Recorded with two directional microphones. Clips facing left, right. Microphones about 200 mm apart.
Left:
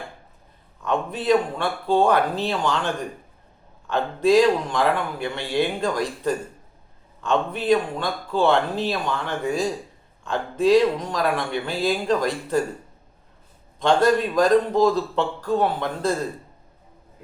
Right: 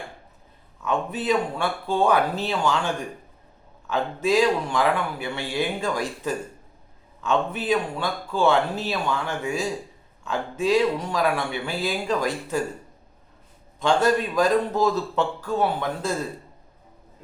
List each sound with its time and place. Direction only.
0.9 s speech: 5° right (ahead or behind)
13.8 s speech: 5° right (ahead or behind)